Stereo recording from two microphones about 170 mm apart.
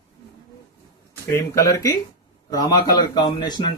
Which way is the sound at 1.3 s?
15° left (ahead or behind).